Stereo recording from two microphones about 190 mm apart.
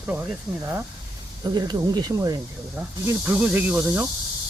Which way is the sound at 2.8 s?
10° right (ahead or behind).